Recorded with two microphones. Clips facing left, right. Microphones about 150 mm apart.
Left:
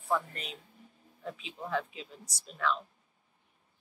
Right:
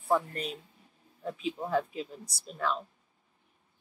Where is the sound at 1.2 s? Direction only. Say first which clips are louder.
Right 7 dB; 40° right (ahead or behind).